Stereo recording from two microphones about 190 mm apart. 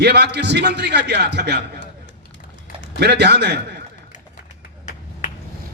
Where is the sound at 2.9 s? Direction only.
60° right (ahead or behind).